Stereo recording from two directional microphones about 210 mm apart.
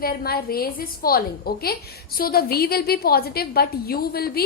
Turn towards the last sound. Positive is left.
turn(degrees=45)  # may be behind; listen again after turning